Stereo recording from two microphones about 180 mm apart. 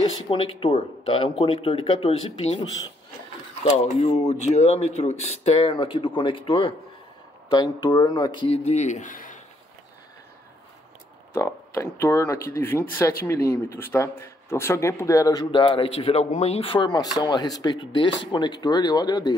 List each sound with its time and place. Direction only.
0.0 s speech: 30° left (ahead or behind)
3.7 s speech: 35° left (ahead or behind)
11.3 s speech: 15° left (ahead or behind)